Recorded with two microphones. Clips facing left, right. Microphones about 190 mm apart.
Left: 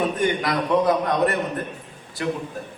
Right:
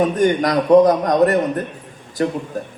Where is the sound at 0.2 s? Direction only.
40° right (ahead or behind).